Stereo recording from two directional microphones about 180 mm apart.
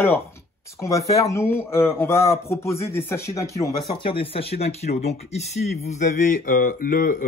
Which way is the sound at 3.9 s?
30° left (ahead or behind).